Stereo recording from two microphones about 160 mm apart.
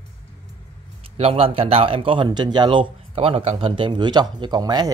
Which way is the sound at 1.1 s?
40° right (ahead or behind).